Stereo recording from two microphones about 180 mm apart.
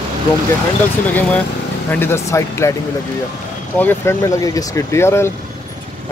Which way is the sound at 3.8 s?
10° left (ahead or behind).